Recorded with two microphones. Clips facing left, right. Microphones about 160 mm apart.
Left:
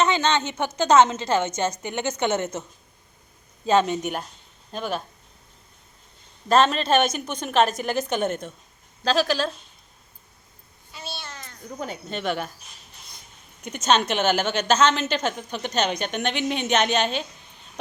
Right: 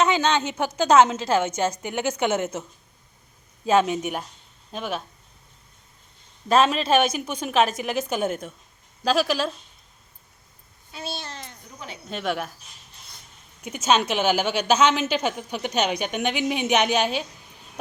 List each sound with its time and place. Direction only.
0.0 s a woman's voice: 10° right (ahead or behind)
3.7 s a woman's voice: 5° right (ahead or behind)
6.5 s a woman's voice: 5° right (ahead or behind)
11.2 s a child's voice: 30° right (ahead or behind)
12.0 s a woman's voice: centre (ahead or behind)
13.6 s a woman's voice: 5° right (ahead or behind)